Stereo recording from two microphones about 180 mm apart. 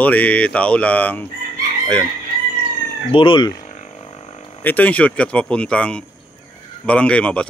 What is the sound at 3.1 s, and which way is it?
Speech, 30° left (ahead or behind).